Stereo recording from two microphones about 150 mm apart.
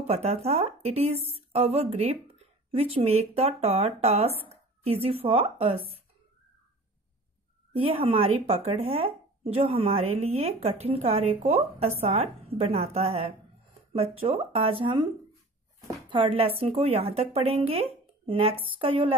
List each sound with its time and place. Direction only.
0.0 s speech: 45° right (ahead or behind)
7.7 s speech: 35° right (ahead or behind)
16.1 s speech: 35° right (ahead or behind)